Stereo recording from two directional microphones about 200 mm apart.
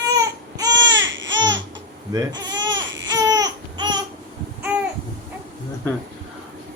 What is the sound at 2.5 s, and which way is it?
Baby cry, 65° right (ahead or behind).